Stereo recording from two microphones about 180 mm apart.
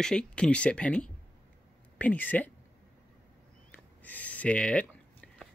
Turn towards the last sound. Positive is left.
turn(degrees=5)  # may be behind; listen again after turning